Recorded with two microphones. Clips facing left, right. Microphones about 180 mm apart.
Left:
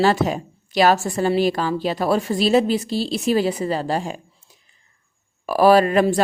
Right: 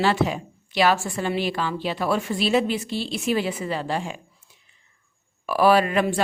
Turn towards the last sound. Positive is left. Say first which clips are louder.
# left 5 dB
turn(degrees=40)  # may be behind; listen again after turning